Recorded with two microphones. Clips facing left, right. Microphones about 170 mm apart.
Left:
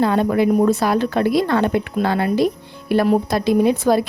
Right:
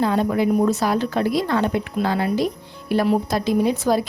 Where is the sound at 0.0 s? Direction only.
60° left (ahead or behind).